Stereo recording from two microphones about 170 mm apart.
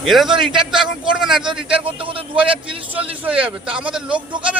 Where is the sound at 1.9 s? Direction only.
30° right (ahead or behind).